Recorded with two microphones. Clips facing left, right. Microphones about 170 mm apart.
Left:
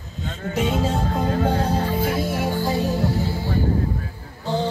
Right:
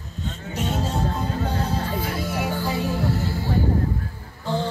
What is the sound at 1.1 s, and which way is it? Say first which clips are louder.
Music: left 5 dB; 50° left (ahead or behind).